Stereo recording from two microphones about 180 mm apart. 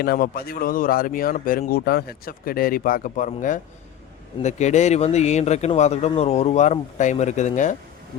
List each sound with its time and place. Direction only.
0.0 s a man's voice: 60° left (ahead or behind)
4.4 s speech: 40° left (ahead or behind)